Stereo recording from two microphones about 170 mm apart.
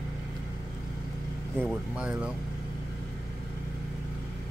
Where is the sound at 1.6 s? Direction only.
5° right (ahead or behind).